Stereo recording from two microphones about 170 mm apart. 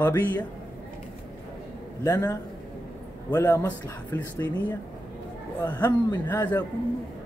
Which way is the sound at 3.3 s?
15° left (ahead or behind).